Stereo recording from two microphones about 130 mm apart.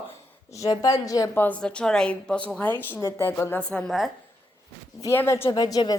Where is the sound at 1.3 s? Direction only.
15° left (ahead or behind).